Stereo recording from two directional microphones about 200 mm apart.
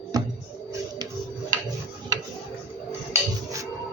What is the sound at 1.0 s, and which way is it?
Tick-tock, 20° right (ahead or behind).